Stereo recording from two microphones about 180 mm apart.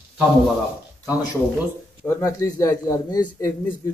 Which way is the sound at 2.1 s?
15° left (ahead or behind).